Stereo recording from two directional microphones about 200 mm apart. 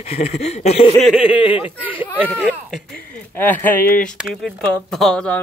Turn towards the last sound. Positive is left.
turn(degrees=5)  # may be behind; listen again after turning